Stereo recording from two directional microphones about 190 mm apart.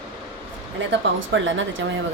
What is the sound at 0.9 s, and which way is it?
Speech, 80° right.